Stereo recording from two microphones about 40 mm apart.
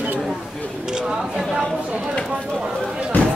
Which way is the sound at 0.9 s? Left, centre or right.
Centre.